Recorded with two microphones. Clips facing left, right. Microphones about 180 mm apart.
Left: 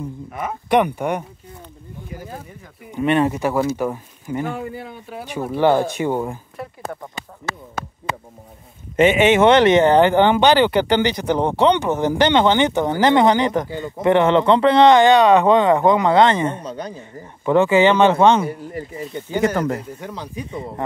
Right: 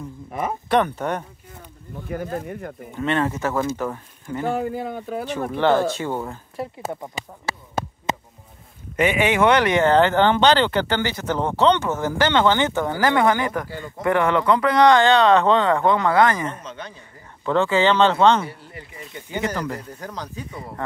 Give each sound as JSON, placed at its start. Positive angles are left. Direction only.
{"t": 0.7, "sound": "speech", "side_deg": 15}
{"t": 2.0, "sound": "speech", "side_deg": -65}
{"t": 2.9, "sound": "speech", "side_deg": 15}
{"t": 4.5, "sound": "speech", "side_deg": -45}
{"t": 5.5, "sound": "speech", "side_deg": 15}
{"t": 8.9, "sound": "speech", "side_deg": 25}
{"t": 17.5, "sound": "speech", "side_deg": 15}
{"t": 18.5, "sound": "speech", "side_deg": 45}
{"t": 20.1, "sound": "speech", "side_deg": 10}
{"t": 20.5, "sound": "speech", "side_deg": 20}